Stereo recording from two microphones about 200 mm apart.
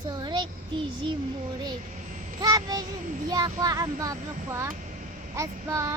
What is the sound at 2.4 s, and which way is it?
A child's voice, 20° right (ahead or behind).